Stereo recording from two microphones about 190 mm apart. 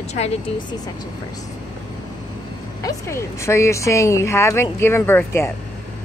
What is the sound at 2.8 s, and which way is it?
A man's voice, 15° left (ahead or behind).